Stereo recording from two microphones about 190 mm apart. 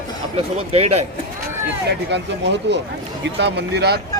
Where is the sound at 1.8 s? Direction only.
65° right (ahead or behind).